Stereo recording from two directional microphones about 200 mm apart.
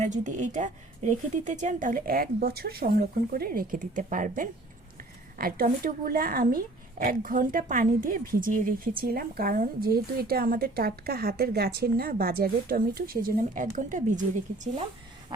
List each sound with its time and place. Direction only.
0.0 s a woman's voice: 35° right (ahead or behind)